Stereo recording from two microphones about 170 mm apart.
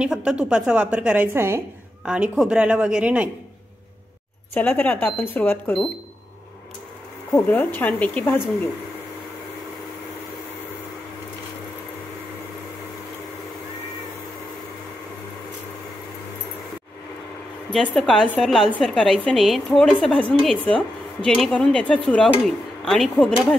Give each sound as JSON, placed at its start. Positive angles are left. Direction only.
{"t": 0.0, "sound": "a woman's voice", "side_deg": -5}
{"t": 4.6, "sound": "speech", "side_deg": 10}
{"t": 7.3, "sound": "speech", "side_deg": 10}
{"t": 17.6, "sound": "speech", "side_deg": 5}